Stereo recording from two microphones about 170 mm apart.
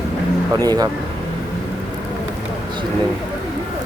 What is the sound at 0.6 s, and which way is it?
Speech, 20° right (ahead or behind).